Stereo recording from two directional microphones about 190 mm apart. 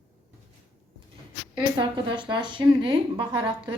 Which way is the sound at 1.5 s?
25° right (ahead or behind).